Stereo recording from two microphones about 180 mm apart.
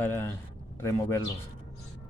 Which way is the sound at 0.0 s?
10° left (ahead or behind).